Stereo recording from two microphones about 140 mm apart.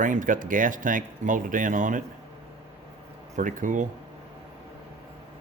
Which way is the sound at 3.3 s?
70° right (ahead or behind).